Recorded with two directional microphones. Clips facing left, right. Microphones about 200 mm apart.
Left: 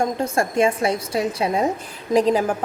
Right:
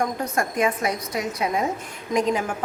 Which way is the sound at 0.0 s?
25° left (ahead or behind).